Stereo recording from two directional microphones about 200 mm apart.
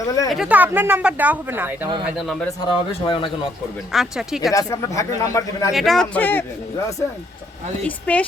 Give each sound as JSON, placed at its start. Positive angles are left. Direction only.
{"t": 0.0, "sound": "speech", "side_deg": 15}
{"t": 0.3, "sound": "a man's voice", "side_deg": -5}
{"t": 2.6, "sound": "speech", "side_deg": 25}
{"t": 3.9, "sound": "a man's voice", "side_deg": 0}
{"t": 4.5, "sound": "speech", "side_deg": 15}
{"t": 5.7, "sound": "a man's voice", "side_deg": 0}
{"t": 7.9, "sound": "speech", "side_deg": 5}